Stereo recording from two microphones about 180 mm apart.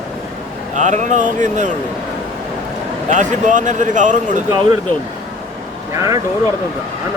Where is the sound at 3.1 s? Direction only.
45° right (ahead or behind).